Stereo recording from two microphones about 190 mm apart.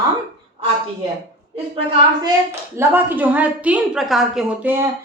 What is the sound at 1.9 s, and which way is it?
Speech, 15° right (ahead or behind).